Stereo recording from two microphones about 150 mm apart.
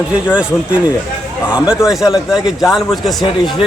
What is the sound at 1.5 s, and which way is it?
Speech, 5° right (ahead or behind).